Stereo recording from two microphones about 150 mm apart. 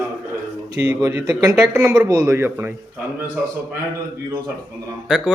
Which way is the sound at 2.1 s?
20° right (ahead or behind).